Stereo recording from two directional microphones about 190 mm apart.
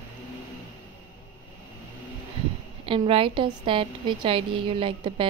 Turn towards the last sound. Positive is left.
turn(degrees=-25)  # may be behind; listen again after turning